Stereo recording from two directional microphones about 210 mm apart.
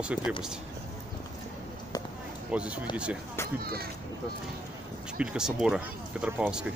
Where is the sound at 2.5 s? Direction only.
5° right (ahead or behind).